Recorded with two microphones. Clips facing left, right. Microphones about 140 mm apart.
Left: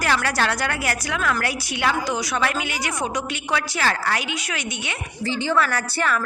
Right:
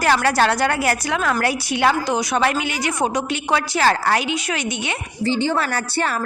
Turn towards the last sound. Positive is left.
turn(degrees=-30)  # may be behind; listen again after turning